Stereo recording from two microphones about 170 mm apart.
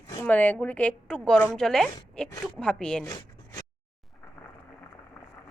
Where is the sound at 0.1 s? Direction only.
10° left (ahead or behind).